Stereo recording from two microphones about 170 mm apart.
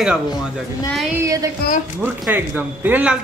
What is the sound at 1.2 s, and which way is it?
Speech, 20° right (ahead or behind).